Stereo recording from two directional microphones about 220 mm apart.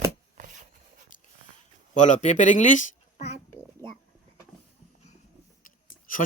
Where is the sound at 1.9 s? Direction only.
35° left (ahead or behind).